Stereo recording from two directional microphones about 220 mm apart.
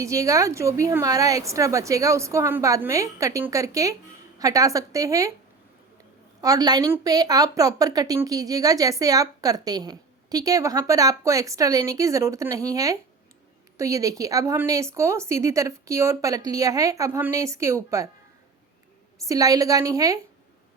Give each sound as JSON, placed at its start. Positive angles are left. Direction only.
{"t": 0.0, "sound": "a woman's voice", "side_deg": -15}
{"t": 6.4, "sound": "a woman's voice", "side_deg": -15}
{"t": 19.2, "sound": "a woman's voice", "side_deg": -15}